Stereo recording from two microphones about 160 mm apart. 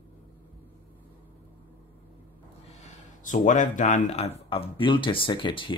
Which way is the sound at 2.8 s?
50° left (ahead or behind).